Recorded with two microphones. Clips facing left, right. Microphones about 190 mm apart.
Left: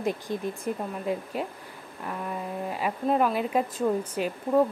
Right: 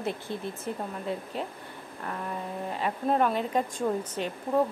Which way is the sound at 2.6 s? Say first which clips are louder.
Left 1 dB; 10° left (ahead or behind).